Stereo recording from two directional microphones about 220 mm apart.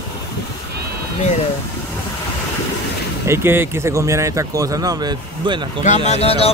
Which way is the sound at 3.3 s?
10° right (ahead or behind).